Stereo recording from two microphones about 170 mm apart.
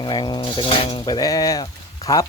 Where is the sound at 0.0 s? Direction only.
25° left (ahead or behind).